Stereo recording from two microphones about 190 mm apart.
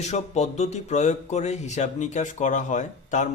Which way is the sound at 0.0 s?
35° left (ahead or behind).